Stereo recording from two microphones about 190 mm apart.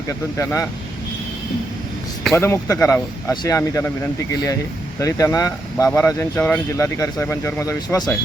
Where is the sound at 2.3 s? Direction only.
15° left (ahead or behind).